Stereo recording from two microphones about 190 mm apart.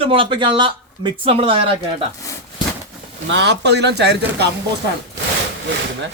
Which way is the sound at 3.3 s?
65° right (ahead or behind).